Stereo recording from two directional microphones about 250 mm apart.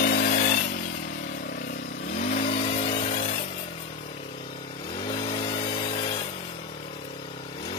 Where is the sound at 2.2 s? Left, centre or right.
Left.